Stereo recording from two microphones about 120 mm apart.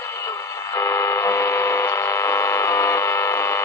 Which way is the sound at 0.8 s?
25° left (ahead or behind).